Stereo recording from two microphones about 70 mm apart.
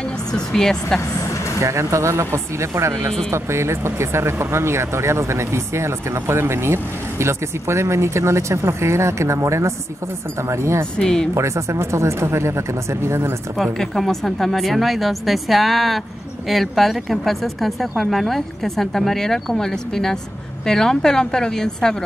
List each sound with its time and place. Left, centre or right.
0.3 s a woman's voice: centre
1.6 s speech: right
11.0 s a woman's voice: centre
11.3 s speech: right
13.6 s a woman's voice: centre